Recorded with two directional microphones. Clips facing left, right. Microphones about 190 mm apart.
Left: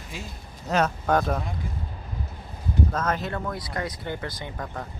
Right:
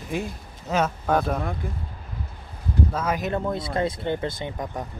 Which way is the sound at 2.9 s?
10° right (ahead or behind).